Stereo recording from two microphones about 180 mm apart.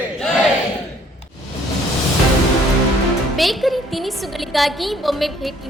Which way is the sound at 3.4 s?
Centre (ahead or behind).